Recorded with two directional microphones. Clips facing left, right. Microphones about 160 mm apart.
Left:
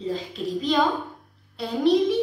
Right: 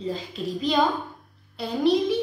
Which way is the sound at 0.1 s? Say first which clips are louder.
Left 2 dB; 5° right (ahead or behind).